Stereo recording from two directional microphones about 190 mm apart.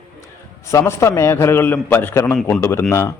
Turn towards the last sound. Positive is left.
turn(degrees=15)  # may be behind; listen again after turning